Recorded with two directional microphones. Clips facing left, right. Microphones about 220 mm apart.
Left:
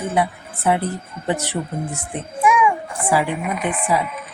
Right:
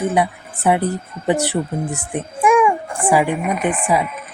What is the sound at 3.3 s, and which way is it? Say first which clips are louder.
Speech: right 4 dB; 50° right (ahead or behind).